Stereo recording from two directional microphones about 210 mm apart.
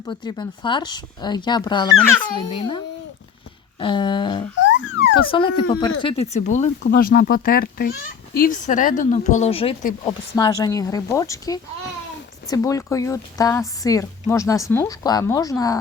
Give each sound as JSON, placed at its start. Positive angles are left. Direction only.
{"t": 0.0, "sound": "speech", "side_deg": 20}
{"t": 4.6, "sound": "music", "side_deg": 60}
{"t": 5.2, "sound": "speech", "side_deg": 25}